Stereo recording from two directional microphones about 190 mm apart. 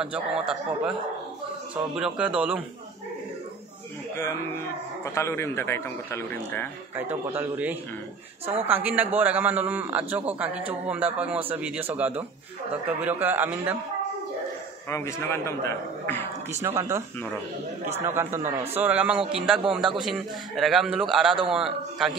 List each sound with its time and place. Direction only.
0.0 s a man's voice: 5° right (ahead or behind)
2.0 s a man's voice: 5° right (ahead or behind)
5.0 s a man's voice: 15° left (ahead or behind)
7.0 s a man's voice: 10° right (ahead or behind)
14.9 s a man's voice: 15° left (ahead or behind)
16.5 s a man's voice: 15° right (ahead or behind)
18.1 s a man's voice: 15° right (ahead or behind)